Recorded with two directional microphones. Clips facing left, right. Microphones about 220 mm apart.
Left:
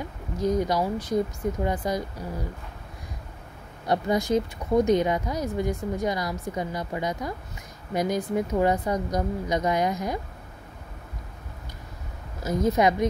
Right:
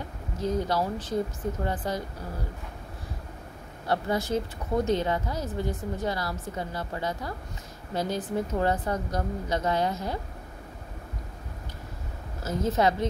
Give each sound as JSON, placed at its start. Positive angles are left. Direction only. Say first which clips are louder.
{"t": 0.4, "sound": "speech", "louder": "left 3 dB", "side_deg": 15}
{"t": 3.8, "sound": "speech", "louder": "left 3 dB", "side_deg": 15}
{"t": 12.4, "sound": "speech", "louder": "left 3 dB", "side_deg": 15}